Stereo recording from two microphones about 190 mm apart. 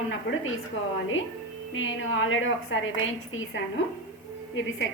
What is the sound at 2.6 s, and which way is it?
A woman's voice, 80° left.